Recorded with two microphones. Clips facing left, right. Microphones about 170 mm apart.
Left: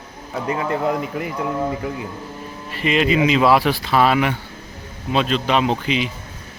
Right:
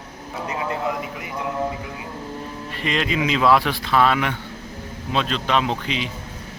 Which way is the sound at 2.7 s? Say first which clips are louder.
Left 6 dB; 5° left (ahead or behind).